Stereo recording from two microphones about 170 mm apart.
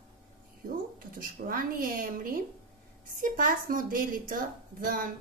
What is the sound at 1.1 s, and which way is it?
A child's voice, 55° right (ahead or behind).